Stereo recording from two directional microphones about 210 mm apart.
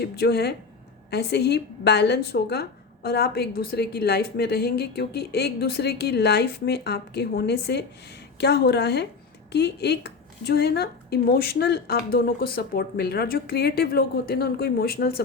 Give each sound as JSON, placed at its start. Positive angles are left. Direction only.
{"t": 0.0, "sound": "a woman's voice", "side_deg": 50}